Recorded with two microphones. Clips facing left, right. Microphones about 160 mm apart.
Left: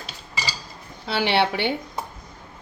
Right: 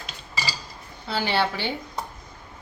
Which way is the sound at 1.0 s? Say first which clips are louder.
Left 3 dB; 75° left (ahead or behind).